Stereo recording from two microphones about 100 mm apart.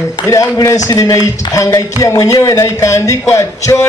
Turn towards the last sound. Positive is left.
turn(degrees=30)  # may be behind; listen again after turning